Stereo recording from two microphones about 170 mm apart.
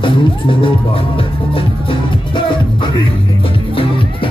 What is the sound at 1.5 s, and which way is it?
Music, 30° left (ahead or behind).